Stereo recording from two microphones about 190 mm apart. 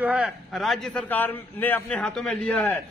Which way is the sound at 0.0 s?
5° right (ahead or behind).